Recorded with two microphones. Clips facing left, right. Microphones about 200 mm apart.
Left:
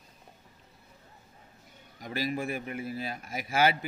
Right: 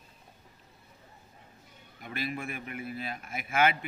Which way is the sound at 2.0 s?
35° left (ahead or behind).